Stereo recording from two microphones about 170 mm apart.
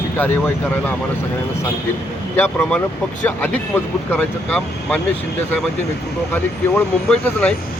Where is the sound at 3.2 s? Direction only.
10° left (ahead or behind).